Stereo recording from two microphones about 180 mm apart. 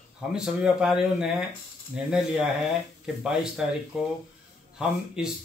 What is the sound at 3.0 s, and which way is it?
Speech, 5° right (ahead or behind).